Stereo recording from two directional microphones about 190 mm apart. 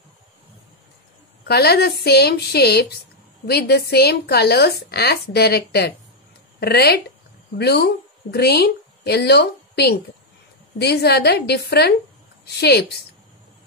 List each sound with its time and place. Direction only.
1.4 s a woman's voice: 55° left (ahead or behind)